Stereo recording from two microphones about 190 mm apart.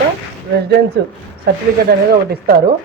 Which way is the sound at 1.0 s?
60° right (ahead or behind).